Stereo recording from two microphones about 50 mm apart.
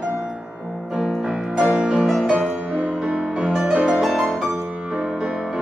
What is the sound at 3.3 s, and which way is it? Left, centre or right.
Music, centre.